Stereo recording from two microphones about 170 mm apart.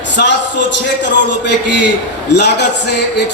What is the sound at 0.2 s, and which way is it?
A man's voice, 90° left.